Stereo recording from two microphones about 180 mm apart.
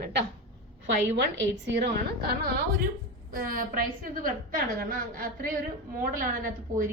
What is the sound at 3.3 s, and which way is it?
A woman's voice, 50° right (ahead or behind).